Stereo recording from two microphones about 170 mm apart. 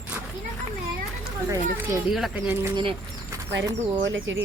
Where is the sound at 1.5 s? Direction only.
15° right (ahead or behind).